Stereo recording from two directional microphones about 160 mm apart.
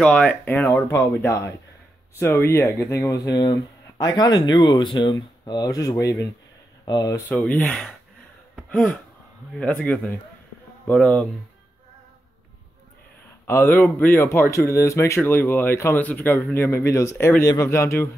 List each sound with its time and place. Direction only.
0.0 s speech: 5° left (ahead or behind); by 7.2 s 25° left (ahead or behind)
7.2 s speech: 10° left (ahead or behind)
8.6 s gasp: 5° left (ahead or behind)
9.8 s a man's voice: 5° left (ahead or behind)
13.5 s speech: 15° left (ahead or behind)